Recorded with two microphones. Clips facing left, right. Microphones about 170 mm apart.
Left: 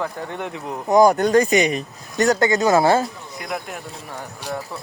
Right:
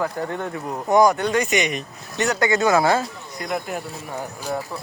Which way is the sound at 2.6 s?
25° left (ahead or behind).